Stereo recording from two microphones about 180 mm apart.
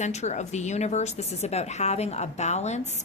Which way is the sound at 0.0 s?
40° left (ahead or behind).